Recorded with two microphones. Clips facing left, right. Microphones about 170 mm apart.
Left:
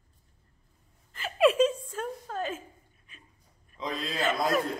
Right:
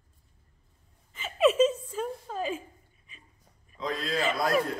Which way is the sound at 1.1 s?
Centre (ahead or behind).